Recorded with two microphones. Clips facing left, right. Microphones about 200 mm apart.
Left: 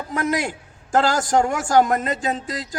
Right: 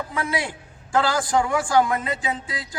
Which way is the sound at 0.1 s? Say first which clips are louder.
Left 9 dB; 45° left (ahead or behind).